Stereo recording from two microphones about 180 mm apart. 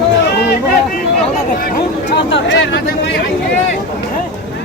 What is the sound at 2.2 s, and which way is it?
Speech, 90° left.